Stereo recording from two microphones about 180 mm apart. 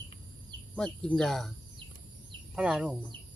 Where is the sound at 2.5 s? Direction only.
5° right (ahead or behind).